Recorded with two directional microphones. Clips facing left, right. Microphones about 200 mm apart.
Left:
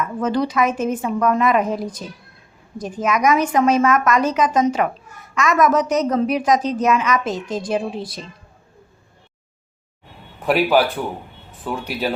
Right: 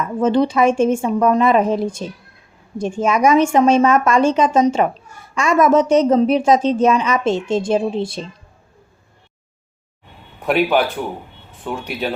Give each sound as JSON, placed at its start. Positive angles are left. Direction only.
{"t": 0.2, "sound": "a woman's voice", "side_deg": -25}
{"t": 10.4, "sound": "speech", "side_deg": 0}